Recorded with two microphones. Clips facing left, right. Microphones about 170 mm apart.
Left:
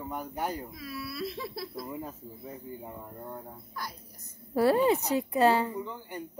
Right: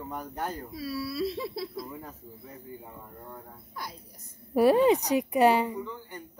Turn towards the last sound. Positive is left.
turn(degrees=20)  # may be behind; listen again after turning